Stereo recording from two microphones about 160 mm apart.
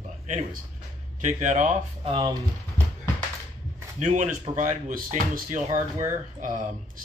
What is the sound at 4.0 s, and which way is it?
A man's voice, 50° right (ahead or behind).